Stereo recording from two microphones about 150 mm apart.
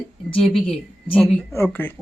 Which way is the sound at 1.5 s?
15° left (ahead or behind).